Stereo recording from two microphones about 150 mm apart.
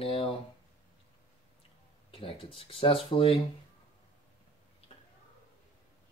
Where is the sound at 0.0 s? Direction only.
40° left (ahead or behind).